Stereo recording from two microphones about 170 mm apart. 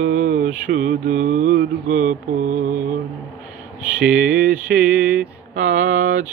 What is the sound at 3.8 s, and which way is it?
Mantra, 5° right (ahead or behind).